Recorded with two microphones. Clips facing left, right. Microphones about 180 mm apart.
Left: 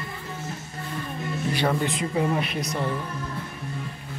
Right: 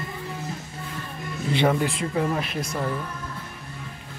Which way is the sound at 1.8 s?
Centre (ahead or behind).